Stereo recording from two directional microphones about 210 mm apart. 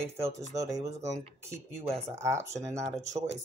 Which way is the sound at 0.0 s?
30° right (ahead or behind).